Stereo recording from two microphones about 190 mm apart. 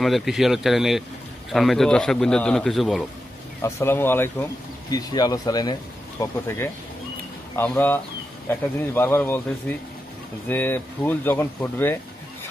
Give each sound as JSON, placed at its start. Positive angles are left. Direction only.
{"t": 0.0, "sound": "a man's voice", "side_deg": 0}
{"t": 3.6, "sound": "speech", "side_deg": 10}